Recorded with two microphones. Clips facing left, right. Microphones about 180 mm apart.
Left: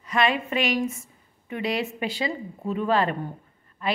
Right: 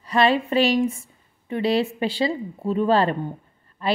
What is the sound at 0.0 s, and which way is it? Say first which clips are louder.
A woman's voice: right 4 dB; 35° right (ahead or behind).